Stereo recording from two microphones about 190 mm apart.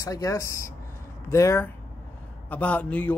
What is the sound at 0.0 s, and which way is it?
Speech, 15° left (ahead or behind).